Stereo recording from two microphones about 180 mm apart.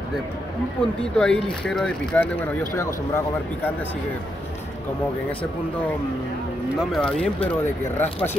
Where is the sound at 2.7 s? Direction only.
15° left (ahead or behind).